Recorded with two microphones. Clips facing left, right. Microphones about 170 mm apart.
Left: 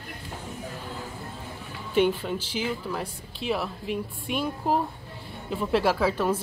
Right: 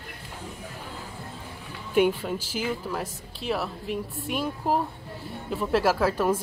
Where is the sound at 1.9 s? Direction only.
5° right (ahead or behind).